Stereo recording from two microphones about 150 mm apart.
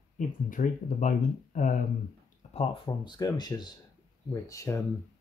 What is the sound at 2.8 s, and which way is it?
Speech, 25° left (ahead or behind).